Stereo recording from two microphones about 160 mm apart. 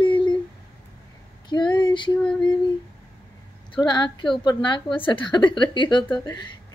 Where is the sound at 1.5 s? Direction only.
30° left (ahead or behind).